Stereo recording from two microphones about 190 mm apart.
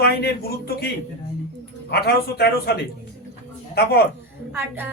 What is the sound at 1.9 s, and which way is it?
Speech, 55° left (ahead or behind).